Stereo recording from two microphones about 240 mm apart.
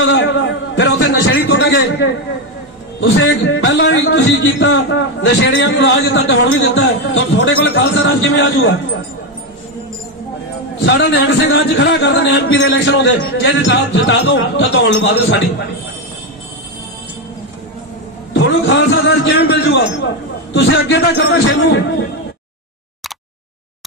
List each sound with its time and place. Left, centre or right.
0.0 s a sound: left
3.0 s a man's voice: left
10.9 s a man's voice: left
18.3 s a man's voice: left